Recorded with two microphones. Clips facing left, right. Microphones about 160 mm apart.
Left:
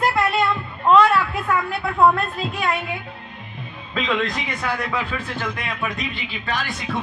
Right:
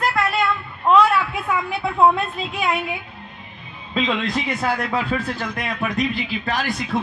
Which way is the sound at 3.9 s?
30° right (ahead or behind).